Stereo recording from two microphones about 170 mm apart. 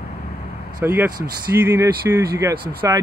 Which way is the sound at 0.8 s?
10° right (ahead or behind).